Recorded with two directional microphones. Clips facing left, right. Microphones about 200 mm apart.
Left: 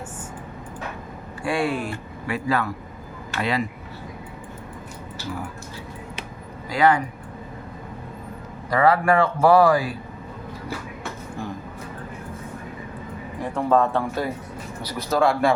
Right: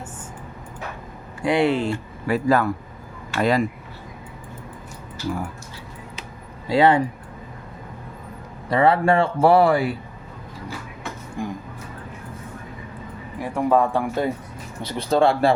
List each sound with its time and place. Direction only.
1.4 s speech: 20° right (ahead or behind)
2.2 s speech: 40° right (ahead or behind)
6.7 s speech: 25° right (ahead or behind)
8.7 s speech: 25° right (ahead or behind)
11.4 s a sound: 15° right (ahead or behind)
13.4 s speech: 10° right (ahead or behind)
14.8 s speech: 25° right (ahead or behind)